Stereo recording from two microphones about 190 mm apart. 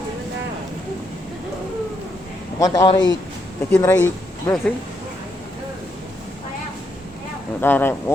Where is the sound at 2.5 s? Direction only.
20° left (ahead or behind).